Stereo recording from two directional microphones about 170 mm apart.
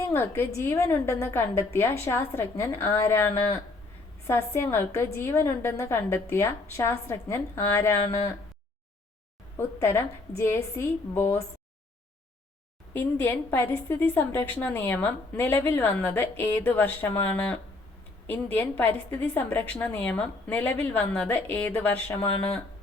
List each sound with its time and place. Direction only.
0.1 s a woman's voice: 15° left (ahead or behind)
9.6 s a woman's voice: 15° left (ahead or behind)
12.9 s a woman's voice: 10° left (ahead or behind)